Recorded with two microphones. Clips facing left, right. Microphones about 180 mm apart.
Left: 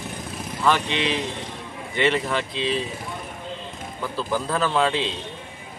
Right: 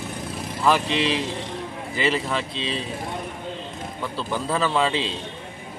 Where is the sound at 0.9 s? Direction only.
35° right (ahead or behind).